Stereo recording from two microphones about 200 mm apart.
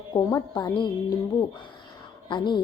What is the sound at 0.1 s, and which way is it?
Speech, 20° left (ahead or behind).